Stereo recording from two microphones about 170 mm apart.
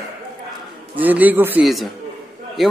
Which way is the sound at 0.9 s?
10° right (ahead or behind).